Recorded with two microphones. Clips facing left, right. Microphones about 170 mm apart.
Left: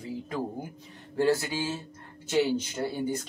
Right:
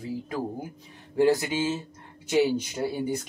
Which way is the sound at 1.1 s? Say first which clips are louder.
Right 3 dB; 15° right (ahead or behind).